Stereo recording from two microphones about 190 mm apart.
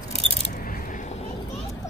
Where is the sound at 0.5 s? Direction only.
50° left (ahead or behind).